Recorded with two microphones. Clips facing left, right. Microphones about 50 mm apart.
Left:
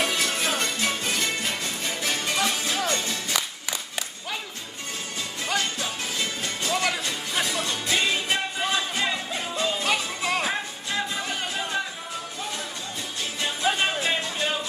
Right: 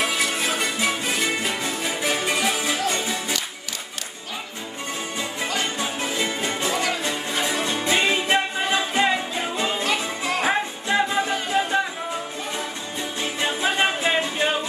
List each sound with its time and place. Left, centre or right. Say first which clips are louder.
0.0 s music: right 2 dB; centre
5.4 s music: right 1 dB; centre
9.8 s music: right 1 dB; centre
10.4 s music: right 6 dB; right
13.2 s music: right 2 dB; right